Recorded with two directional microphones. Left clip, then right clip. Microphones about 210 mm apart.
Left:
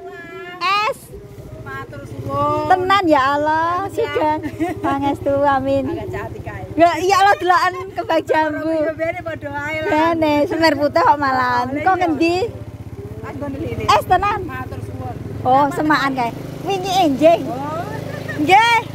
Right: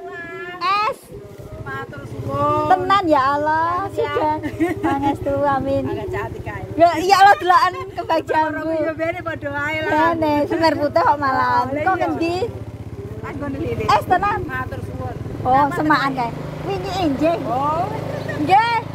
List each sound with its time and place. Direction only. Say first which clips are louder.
0.6 s a sound: left 1 dB; 30° left (ahead or behind)
2.9 s speech: left 1 dB; 25° left (ahead or behind)
3.6 s a sound: left 1 dB; 50° left (ahead or behind)
4.2 s speech: left 1 dB; 30° left (ahead or behind)
6.8 s speech: right 1 dB; 20° left (ahead or behind); by 8.9 s 35° left (ahead or behind)
9.9 s speech: left 2 dB; 30° left (ahead or behind)
13.8 s speech: left 2 dB; 35° left (ahead or behind)
15.4 s speech: left 1 dB; 30° left (ahead or behind)
18.2 s vehicle: left 3 dB; 30° left (ahead or behind)